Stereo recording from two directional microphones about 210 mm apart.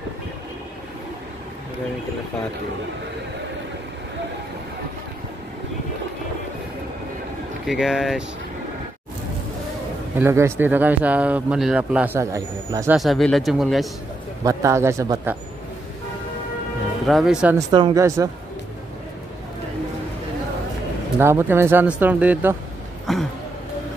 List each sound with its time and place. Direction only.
7.6 s speech: centre (ahead or behind)
10.1 s speech: 10° right (ahead or behind)
12.9 s speech: centre (ahead or behind)
14.4 s speech: 15° right (ahead or behind)
17.0 s speech: centre (ahead or behind)
17.6 s speech: 20° right (ahead or behind)
21.2 s speech: 10° right (ahead or behind)